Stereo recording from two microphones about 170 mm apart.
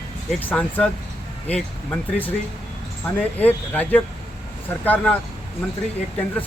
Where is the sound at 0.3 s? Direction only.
10° left (ahead or behind).